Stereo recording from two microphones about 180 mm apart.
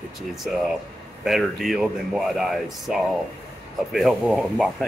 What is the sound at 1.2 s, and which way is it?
Speech, centre (ahead or behind).